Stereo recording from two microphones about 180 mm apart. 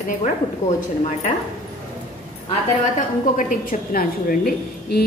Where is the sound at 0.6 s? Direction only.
40° left (ahead or behind).